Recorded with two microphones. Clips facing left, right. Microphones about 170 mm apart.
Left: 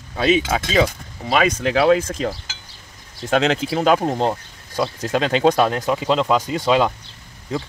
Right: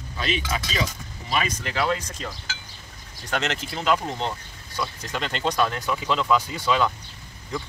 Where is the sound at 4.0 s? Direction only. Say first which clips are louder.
Left 9 dB; 45° left (ahead or behind).